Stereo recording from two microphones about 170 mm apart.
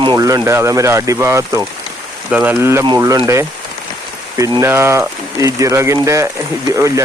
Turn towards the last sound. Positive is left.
turn(degrees=-20)  # may be behind; listen again after turning